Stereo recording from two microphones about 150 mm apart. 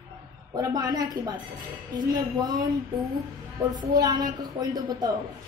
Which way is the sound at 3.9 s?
25° right (ahead or behind).